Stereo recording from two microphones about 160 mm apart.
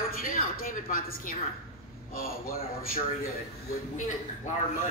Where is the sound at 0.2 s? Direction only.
65° left (ahead or behind).